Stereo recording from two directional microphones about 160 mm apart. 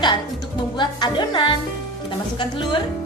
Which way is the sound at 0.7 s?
30° left (ahead or behind).